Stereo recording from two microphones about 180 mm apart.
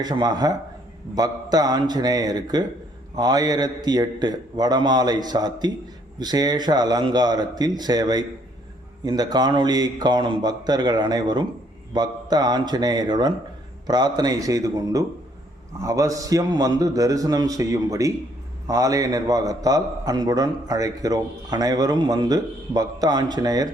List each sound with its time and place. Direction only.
0.0 s a man's voice: 20° right (ahead or behind)